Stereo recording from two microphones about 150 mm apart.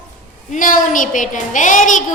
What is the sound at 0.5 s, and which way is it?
A woman's voice, 60° left (ahead or behind).